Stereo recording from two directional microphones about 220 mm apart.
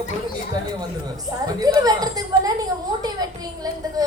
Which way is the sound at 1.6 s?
15° right (ahead or behind).